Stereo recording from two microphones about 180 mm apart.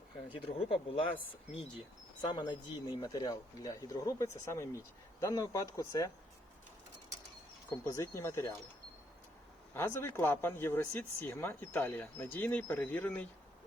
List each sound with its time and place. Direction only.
0.3 s speech: 30° left (ahead or behind)
2.2 s speech: 25° left (ahead or behind)
7.7 s speech: 15° left (ahead or behind)
9.7 s speech: 15° left (ahead or behind)